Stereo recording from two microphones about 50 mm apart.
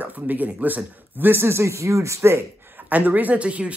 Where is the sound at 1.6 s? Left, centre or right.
Right.